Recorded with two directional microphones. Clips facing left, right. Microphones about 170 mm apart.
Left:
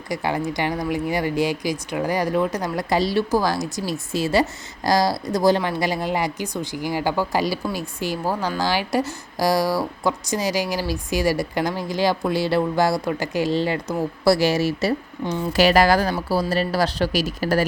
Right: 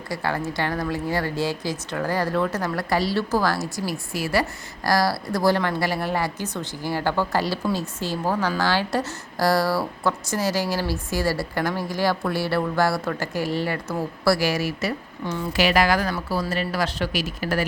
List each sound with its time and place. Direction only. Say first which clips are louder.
0.1 s speech: left 3 dB; 15° left (ahead or behind); by 17.7 s 35° left (ahead or behind)